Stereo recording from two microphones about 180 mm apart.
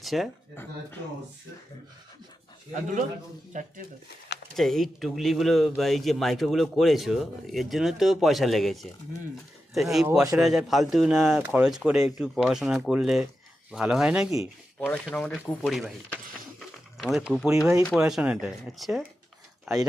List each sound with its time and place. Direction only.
0.0 s speech: centre (ahead or behind)
0.5 s speech: 10° left (ahead or behind)
3.5 s speech: 45° right (ahead or behind)
4.5 s speech: centre (ahead or behind)
14.8 s speech: 5° left (ahead or behind)